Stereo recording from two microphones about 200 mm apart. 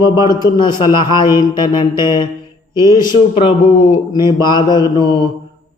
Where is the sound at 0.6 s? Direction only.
25° left (ahead or behind).